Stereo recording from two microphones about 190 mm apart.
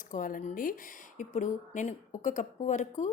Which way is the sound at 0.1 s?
45° left (ahead or behind).